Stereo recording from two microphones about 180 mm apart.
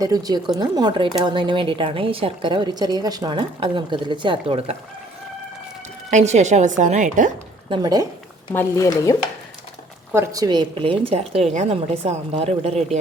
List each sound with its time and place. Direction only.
0.0 s speech: 20° right (ahead or behind)
6.1 s a woman's voice: 40° right (ahead or behind)
7.7 s speech: 20° right (ahead or behind)
8.5 s speech: 15° left (ahead or behind)
10.1 s a woman's voice: 15° right (ahead or behind); by 13.0 s 35° right (ahead or behind)